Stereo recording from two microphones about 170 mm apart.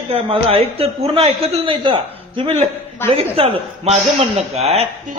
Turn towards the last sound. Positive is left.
turn(degrees=-40)  # may be behind; listen again after turning